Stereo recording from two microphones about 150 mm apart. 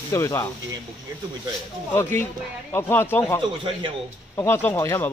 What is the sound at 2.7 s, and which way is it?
Speech, 15° left (ahead or behind).